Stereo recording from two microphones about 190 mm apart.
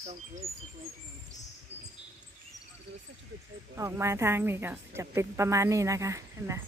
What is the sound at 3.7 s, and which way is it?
A woman's voice, 15° right (ahead or behind).